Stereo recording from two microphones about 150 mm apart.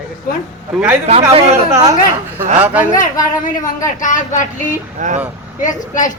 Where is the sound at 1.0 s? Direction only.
45° right (ahead or behind).